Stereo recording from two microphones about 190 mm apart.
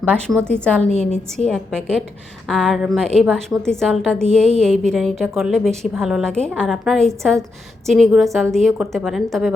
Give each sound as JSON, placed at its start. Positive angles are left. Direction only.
{"t": 0.1, "sound": "a woman's voice", "side_deg": 0}
{"t": 0.9, "sound": "a woman's voice", "side_deg": 35}
{"t": 1.5, "sound": "a woman's voice", "side_deg": 0}